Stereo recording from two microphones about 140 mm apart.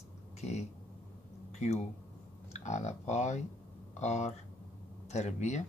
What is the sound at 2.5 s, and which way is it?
Speech, 55° left (ahead or behind).